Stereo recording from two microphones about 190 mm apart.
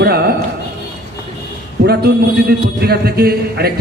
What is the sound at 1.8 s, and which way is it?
A man's voice, 55° right (ahead or behind).